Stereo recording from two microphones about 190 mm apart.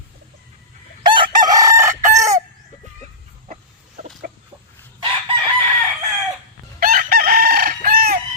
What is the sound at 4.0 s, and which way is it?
Chicken, 40° right (ahead or behind).